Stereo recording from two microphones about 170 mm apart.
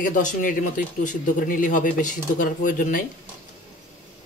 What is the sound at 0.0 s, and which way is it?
Speech, 50° left (ahead or behind).